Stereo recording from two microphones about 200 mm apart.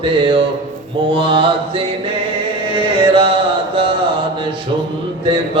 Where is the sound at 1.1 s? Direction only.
25° right (ahead or behind).